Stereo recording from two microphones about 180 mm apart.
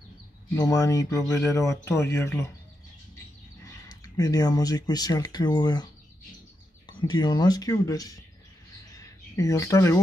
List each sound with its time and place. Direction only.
0.6 s speech: 20° left (ahead or behind)
3.6 s speech: 20° left (ahead or behind)
6.9 s speech: 25° left (ahead or behind)
9.4 s speech: 15° left (ahead or behind)